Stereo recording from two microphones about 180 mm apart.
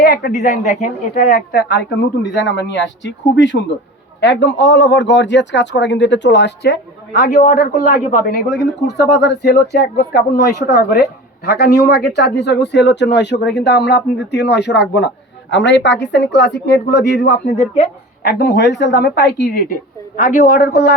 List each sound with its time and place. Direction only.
0.0 s a woman's voice: 60° left (ahead or behind); by 3.6 s 90° left
4.2 s speech: 75° left (ahead or behind); by 8.5 s 55° left (ahead or behind)
8.9 s speech: 70° left (ahead or behind)
15.4 s speech: 85° left; by 19.6 s 65° left (ahead or behind)
20.1 s a woman's voice: 50° left (ahead or behind)